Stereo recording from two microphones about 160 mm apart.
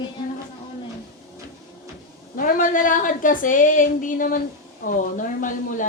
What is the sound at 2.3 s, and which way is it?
A woman's voice, 60° left (ahead or behind).